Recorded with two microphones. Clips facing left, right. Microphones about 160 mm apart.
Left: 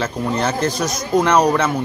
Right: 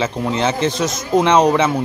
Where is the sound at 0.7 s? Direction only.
25° right (ahead or behind).